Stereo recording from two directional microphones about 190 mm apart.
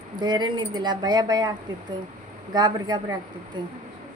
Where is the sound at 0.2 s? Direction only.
20° right (ahead or behind).